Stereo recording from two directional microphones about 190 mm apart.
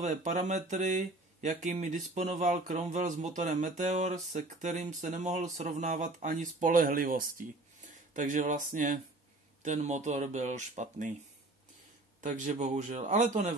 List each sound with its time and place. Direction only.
0.0 s speech: 40° right (ahead or behind)
12.2 s speech: 40° right (ahead or behind)